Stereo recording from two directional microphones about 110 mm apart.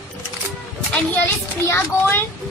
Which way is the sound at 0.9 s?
15° left (ahead or behind).